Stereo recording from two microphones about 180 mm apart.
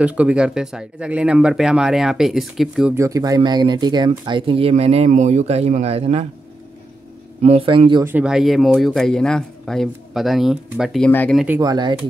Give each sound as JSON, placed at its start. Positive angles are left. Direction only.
{"t": 0.0, "sound": "speech", "side_deg": -5}
{"t": 2.9, "sound": "speech", "side_deg": -15}
{"t": 7.4, "sound": "speech", "side_deg": -30}
{"t": 8.0, "sound": "speech", "side_deg": -10}
{"t": 11.1, "sound": "speech", "side_deg": 10}
{"t": 11.3, "sound": "speech", "side_deg": -10}
{"t": 11.6, "sound": "speech", "side_deg": -25}